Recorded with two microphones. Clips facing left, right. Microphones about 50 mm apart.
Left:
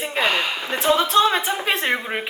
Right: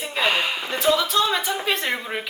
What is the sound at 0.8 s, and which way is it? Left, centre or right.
Speech, left.